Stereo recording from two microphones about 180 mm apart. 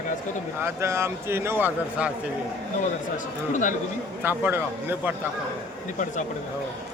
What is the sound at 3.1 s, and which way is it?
Speech, 45° left (ahead or behind).